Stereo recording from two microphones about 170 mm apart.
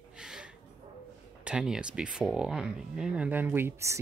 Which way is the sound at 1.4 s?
5° right (ahead or behind).